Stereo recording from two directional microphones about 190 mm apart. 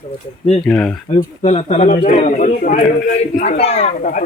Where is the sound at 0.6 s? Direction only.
5° left (ahead or behind).